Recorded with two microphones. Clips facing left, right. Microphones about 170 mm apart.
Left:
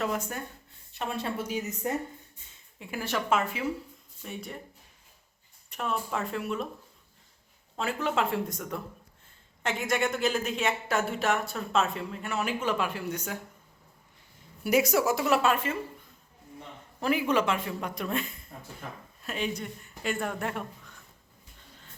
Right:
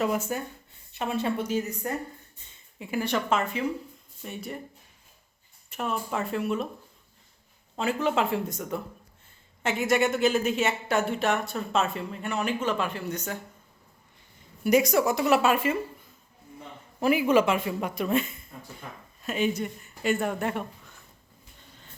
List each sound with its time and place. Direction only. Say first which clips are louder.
0.0 s speech: right 4 dB; 5° right (ahead or behind)
1.5 s speech: right 2 dB; 15° left (ahead or behind)
2.5 s speech: right 6 dB; centre (ahead or behind)
5.7 s speech: right 2 dB; 5° right (ahead or behind)
7.8 s speech: right 3 dB; centre (ahead or behind)
14.6 s speech: right 3 dB; 5° left (ahead or behind)
17.0 s speech: right 5 dB; 10° right (ahead or behind)